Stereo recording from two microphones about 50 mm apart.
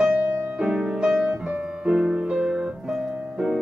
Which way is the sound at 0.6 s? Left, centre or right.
Centre.